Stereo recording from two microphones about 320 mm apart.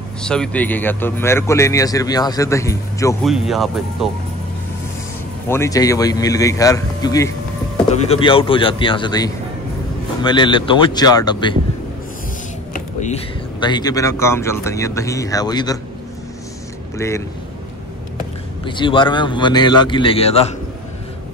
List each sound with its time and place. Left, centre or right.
0.2 s speech: centre
3.3 s speech: centre
5.5 s speech: centre
12.7 s speech: left
16.9 s speech: centre
18.7 s speech: centre